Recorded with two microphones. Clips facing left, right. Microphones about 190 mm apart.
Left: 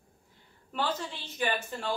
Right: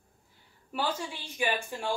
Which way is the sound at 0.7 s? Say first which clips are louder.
Even; 10° right (ahead or behind).